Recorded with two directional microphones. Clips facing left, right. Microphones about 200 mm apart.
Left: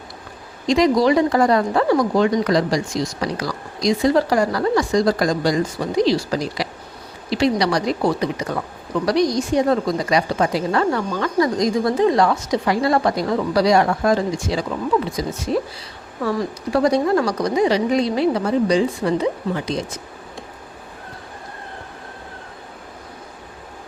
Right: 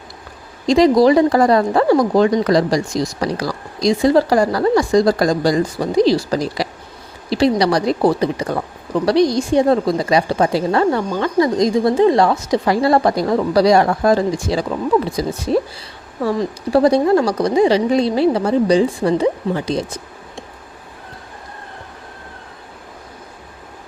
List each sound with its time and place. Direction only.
0.7 s a woman's voice: 35° right (ahead or behind)
16.2 s speech: 30° right (ahead or behind)